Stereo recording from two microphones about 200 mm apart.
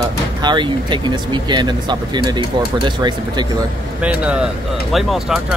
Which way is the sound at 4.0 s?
5° right (ahead or behind).